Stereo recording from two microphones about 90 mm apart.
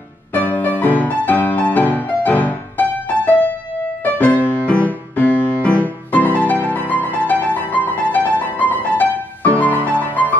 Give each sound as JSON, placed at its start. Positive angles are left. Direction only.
{"t": 0.3, "sound": "music", "side_deg": 20}